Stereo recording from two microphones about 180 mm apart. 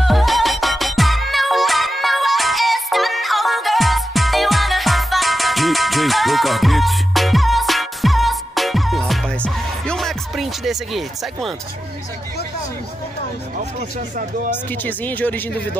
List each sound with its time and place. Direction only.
0.0 s music: centre (ahead or behind)
13.7 s speech: 45° right (ahead or behind)
14.5 s speech: 10° left (ahead or behind)